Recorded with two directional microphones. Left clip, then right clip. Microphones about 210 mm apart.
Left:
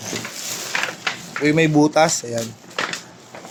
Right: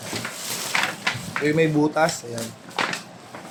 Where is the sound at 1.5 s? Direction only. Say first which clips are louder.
Left 4 dB; 50° left (ahead or behind).